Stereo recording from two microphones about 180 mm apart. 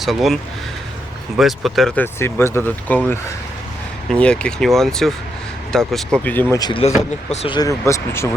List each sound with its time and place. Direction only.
0.0 s speech: centre (ahead or behind)
1.4 s speech: centre (ahead or behind)
2.1 s speech: 15° left (ahead or behind)
6.6 s speech: 25° left (ahead or behind)